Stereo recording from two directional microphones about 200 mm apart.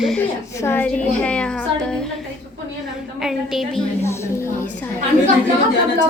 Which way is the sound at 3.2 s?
Centre (ahead or behind).